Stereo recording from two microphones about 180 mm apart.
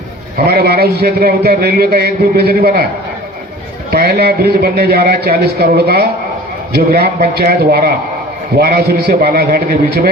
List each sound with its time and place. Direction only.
0.3 s a man's voice: 60° right (ahead or behind)
3.9 s a man's voice: 60° right (ahead or behind)